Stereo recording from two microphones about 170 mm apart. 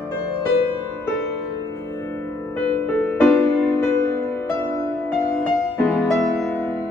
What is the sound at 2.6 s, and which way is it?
Music, 10° left (ahead or behind).